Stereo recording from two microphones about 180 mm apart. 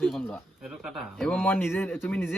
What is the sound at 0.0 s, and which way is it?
Speech, centre (ahead or behind).